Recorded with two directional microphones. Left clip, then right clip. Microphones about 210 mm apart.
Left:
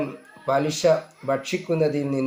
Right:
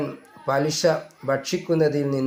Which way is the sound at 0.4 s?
25° right (ahead or behind).